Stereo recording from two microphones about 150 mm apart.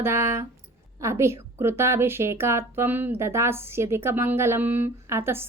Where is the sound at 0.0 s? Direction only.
15° right (ahead or behind).